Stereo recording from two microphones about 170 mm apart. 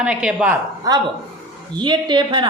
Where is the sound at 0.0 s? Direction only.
5° right (ahead or behind).